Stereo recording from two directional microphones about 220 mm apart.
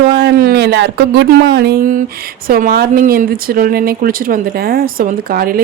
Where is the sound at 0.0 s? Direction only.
50° right (ahead or behind).